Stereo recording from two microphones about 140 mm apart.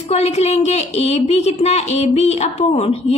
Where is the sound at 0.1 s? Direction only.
50° left (ahead or behind).